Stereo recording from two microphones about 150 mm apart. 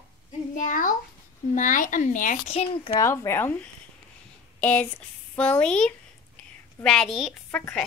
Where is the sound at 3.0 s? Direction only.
20° left (ahead or behind).